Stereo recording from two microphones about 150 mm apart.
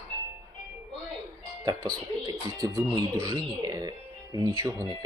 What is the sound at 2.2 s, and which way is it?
Speech, 25° right (ahead or behind).